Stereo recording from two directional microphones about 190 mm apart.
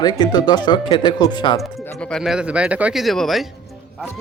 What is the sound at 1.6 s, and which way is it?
Speech, centre (ahead or behind).